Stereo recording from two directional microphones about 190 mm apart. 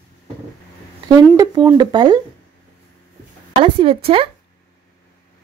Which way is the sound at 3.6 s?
25° right (ahead or behind).